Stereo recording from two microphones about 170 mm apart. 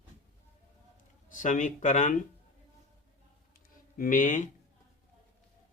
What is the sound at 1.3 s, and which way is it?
Speech, 50° left (ahead or behind).